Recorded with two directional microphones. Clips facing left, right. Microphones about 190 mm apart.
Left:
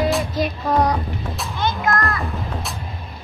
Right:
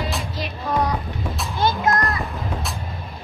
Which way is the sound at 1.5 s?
35° right (ahead or behind).